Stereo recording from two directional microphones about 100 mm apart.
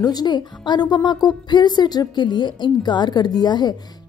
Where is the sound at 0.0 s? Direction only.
40° left (ahead or behind).